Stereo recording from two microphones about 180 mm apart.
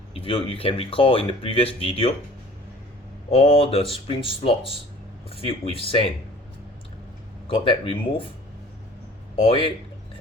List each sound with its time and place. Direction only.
0.3 s speech: 30° left (ahead or behind)
3.2 s speech: 30° left (ahead or behind)
7.4 s speech: 30° left (ahead or behind)
9.4 s speech: 30° left (ahead or behind)